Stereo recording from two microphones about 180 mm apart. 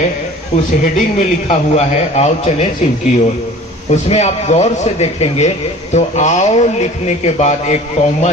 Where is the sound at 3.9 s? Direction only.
40° left (ahead or behind).